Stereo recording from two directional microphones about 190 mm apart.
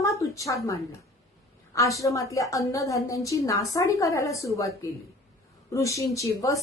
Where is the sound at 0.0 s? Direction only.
15° left (ahead or behind).